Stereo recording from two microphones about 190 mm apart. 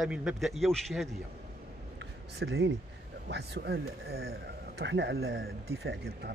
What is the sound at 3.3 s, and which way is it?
Speech, 60° right (ahead or behind).